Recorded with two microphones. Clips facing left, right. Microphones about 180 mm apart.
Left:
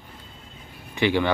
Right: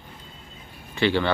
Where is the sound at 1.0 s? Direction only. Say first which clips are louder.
Even; 15° left (ahead or behind).